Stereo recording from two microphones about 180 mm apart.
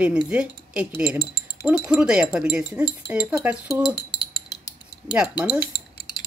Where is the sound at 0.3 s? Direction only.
5° right (ahead or behind).